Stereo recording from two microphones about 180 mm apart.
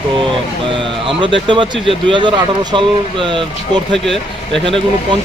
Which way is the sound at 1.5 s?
30° right (ahead or behind).